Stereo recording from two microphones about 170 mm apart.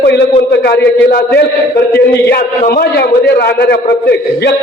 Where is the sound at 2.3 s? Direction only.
70° left (ahead or behind).